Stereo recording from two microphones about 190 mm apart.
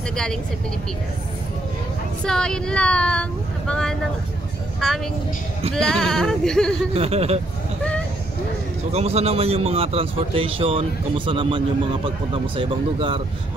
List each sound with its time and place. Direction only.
0.1 s speech: 5° left (ahead or behind)
2.2 s a woman's voice: 5° left (ahead or behind)
6.9 s a man's voice: 35° right (ahead or behind)
8.9 s a man's voice: 35° right (ahead or behind)